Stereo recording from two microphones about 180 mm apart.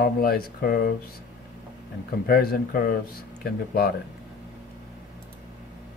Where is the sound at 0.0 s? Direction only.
55° left (ahead or behind).